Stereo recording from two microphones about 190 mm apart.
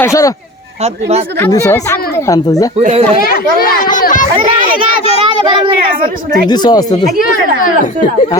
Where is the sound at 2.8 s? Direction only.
35° right (ahead or behind).